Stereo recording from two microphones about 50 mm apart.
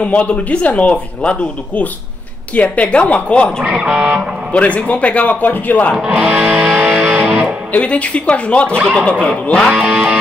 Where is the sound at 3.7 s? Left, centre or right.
Centre.